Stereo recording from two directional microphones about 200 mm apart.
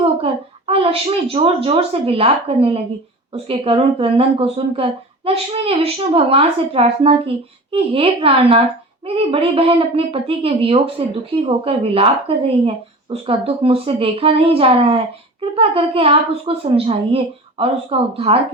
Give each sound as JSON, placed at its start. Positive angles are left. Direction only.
{"t": 0.7, "sound": "speech", "side_deg": -30}